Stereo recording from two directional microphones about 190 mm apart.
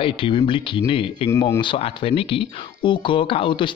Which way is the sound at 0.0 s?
25° left (ahead or behind).